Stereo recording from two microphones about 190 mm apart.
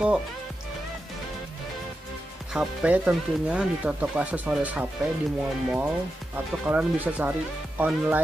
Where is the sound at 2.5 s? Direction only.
5° right (ahead or behind).